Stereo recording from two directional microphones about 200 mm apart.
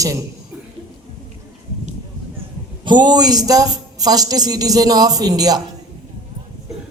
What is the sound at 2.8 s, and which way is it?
A woman's voice, 20° right (ahead or behind).